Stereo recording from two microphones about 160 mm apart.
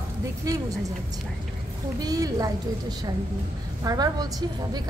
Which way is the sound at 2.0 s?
25° right (ahead or behind).